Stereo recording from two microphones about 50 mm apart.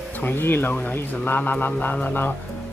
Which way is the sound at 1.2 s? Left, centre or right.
Left.